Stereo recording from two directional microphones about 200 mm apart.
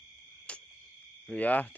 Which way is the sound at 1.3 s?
5° left (ahead or behind).